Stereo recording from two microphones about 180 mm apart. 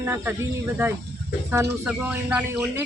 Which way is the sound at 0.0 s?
15° right (ahead or behind).